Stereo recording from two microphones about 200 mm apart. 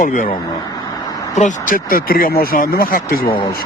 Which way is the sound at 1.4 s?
40° left (ahead or behind).